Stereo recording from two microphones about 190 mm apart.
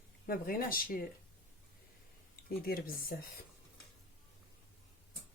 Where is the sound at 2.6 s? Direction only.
50° left (ahead or behind).